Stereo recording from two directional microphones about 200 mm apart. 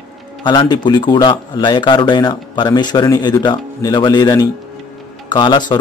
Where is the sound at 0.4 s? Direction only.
20° left (ahead or behind).